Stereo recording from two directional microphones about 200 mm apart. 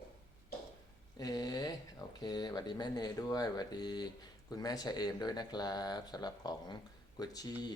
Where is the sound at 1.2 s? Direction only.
20° left (ahead or behind).